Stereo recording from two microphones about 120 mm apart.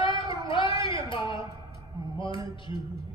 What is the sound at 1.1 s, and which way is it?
A man's voice, 45° left (ahead or behind).